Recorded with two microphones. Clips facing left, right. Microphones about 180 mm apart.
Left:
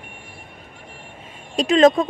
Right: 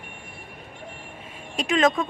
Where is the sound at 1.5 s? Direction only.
30° left (ahead or behind).